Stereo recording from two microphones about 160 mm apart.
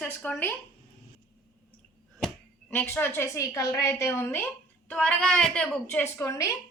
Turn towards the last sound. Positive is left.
turn(degrees=20)  # may be behind; listen again after turning